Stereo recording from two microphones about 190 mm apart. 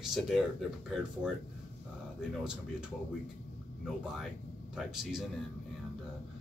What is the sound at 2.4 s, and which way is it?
Speech, 5° right (ahead or behind).